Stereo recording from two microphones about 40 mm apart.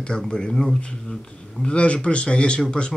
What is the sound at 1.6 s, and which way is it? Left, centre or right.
Speech, left.